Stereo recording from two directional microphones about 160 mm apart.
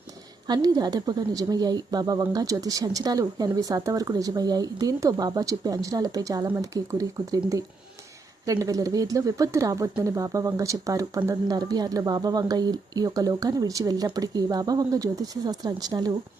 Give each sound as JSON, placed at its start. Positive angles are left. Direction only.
{"t": 0.4, "sound": "speech", "side_deg": -25}
{"t": 8.6, "sound": "speech", "side_deg": -20}